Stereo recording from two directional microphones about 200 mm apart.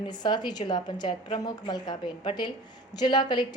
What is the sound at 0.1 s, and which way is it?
A woman's voice, 20° left (ahead or behind).